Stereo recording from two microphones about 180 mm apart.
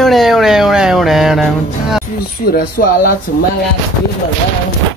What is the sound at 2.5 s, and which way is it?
Speech, 50° left (ahead or behind).